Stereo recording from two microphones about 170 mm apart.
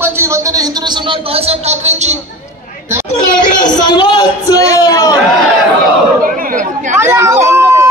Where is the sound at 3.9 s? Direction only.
25° left (ahead or behind).